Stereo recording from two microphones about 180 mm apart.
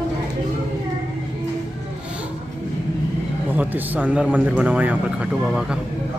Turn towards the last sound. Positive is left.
turn(degrees=-10)  # may be behind; listen again after turning